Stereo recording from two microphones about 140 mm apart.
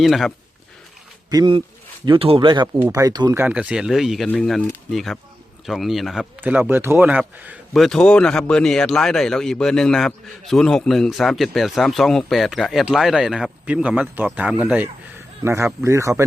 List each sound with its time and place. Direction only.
0.0 s a man's voice: centre (ahead or behind)
1.3 s speech: 30° right (ahead or behind)
2.0 s speech: 40° right (ahead or behind)
2.7 s speech: 20° right (ahead or behind)
3.3 s a man's voice: 10° right (ahead or behind)
6.4 s speech: 15° right (ahead or behind)
7.7 s a man's voice: centre (ahead or behind)
15.4 s speech: 20° right (ahead or behind)